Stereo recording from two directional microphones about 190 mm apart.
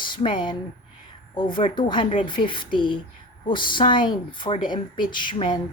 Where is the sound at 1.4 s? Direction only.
25° left (ahead or behind).